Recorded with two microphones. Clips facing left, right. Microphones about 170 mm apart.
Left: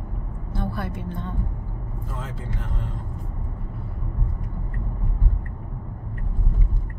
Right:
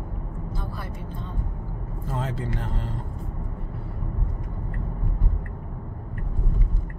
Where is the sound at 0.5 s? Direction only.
65° left (ahead or behind).